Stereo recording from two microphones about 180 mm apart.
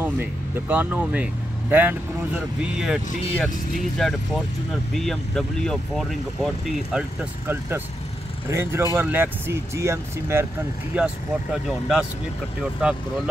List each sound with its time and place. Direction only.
0.0 s speech: 10° right (ahead or behind)